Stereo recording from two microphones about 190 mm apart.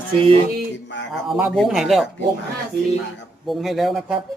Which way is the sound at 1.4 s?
Centre (ahead or behind).